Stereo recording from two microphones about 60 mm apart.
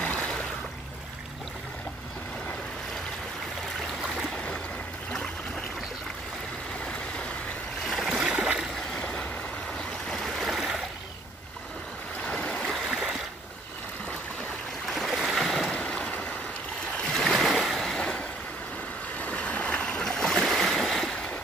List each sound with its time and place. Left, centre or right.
0.0 s a sound: left
7.9 s a sound: centre
8.9 s train: left
10.0 s stream: centre
12.3 s stream: centre
12.6 s stream: centre
14.9 s boat: centre
15.7 s boat: centre
16.9 s a sound: centre
17.3 s a sound: centre
19.1 s waves: left
20.3 s boat: centre